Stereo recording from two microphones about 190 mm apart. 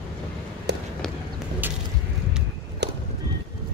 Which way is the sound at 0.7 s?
65° right (ahead or behind).